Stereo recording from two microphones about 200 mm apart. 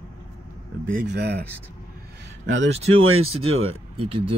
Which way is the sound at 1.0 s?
55° right (ahead or behind).